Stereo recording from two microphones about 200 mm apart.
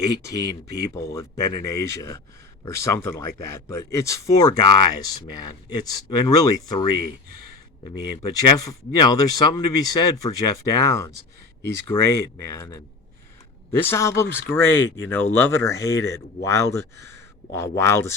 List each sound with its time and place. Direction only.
0.0 s speech: 20° left (ahead or behind)
8.3 s speech: 20° left (ahead or behind)